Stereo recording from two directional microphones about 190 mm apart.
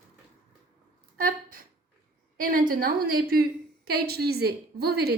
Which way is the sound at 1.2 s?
45° right (ahead or behind).